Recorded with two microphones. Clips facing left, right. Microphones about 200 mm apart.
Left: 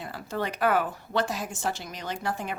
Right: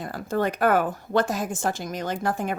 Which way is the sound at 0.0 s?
45° right (ahead or behind).